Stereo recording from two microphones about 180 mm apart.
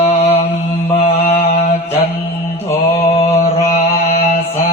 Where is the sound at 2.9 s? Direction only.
35° left (ahead or behind).